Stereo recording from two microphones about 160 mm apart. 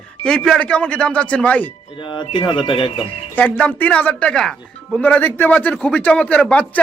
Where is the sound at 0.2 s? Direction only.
5° left (ahead or behind).